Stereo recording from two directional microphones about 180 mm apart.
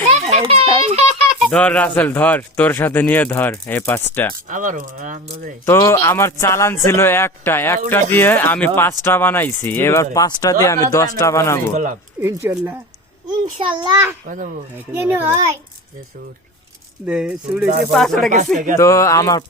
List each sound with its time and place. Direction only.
0.1 s a sound: 35° right (ahead or behind)
1.5 s speech: 5° left (ahead or behind)
4.4 s speech: 45° right (ahead or behind)
5.6 s speech: 15° left (ahead or behind)
12.2 s speech: 15° right (ahead or behind)
13.4 s a child's voice: 30° right (ahead or behind)
14.3 s speech: 45° right (ahead or behind)
14.9 s speech: 10° right (ahead or behind)
17.1 s speech: 5° right (ahead or behind)
18.8 s speech: 15° left (ahead or behind)